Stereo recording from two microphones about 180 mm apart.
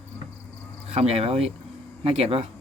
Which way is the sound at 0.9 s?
35° right (ahead or behind).